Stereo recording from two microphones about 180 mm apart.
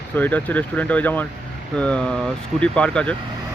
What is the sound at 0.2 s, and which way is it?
Speech, 10° left (ahead or behind).